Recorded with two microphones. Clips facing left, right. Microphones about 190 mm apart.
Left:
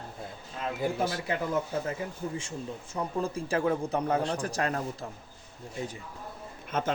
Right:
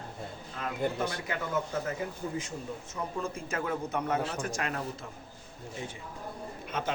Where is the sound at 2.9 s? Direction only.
35° left (ahead or behind).